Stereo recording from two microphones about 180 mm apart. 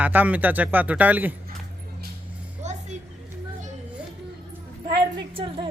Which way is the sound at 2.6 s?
40° right (ahead or behind).